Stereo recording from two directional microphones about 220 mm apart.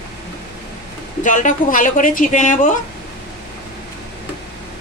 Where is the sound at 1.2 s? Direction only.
35° left (ahead or behind).